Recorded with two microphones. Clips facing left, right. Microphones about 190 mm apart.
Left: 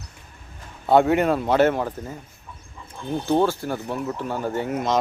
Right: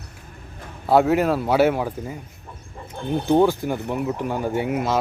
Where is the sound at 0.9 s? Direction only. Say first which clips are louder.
Even; 5° right (ahead or behind).